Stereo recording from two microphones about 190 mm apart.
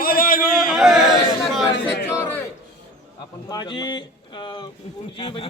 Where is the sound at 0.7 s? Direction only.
Centre (ahead or behind).